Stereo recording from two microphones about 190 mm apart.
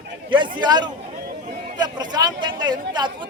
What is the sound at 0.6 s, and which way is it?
Speech, 20° right (ahead or behind).